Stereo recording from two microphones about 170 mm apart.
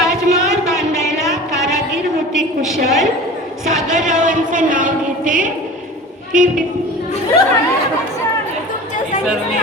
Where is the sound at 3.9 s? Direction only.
45° right (ahead or behind).